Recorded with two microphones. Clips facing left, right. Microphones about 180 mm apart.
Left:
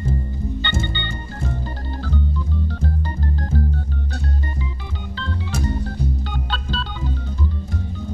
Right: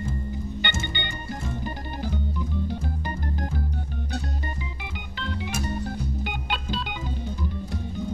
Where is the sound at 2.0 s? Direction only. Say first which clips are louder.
Left 4 dB; 15° right (ahead or behind).